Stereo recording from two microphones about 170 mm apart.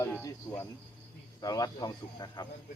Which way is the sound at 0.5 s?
5° left (ahead or behind).